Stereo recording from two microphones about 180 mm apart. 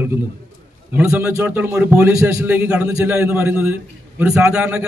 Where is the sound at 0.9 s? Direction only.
15° right (ahead or behind).